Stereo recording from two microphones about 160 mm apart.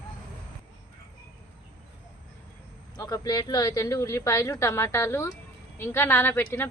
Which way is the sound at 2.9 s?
25° left (ahead or behind).